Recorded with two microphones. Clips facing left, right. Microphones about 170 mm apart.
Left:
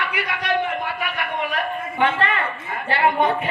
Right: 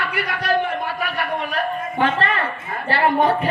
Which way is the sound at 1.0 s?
40° right (ahead or behind).